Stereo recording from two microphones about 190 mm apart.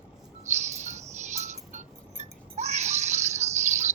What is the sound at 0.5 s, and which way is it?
Music, 35° right (ahead or behind).